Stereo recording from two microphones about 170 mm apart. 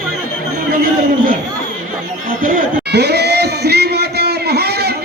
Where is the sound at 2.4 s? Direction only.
65° right (ahead or behind).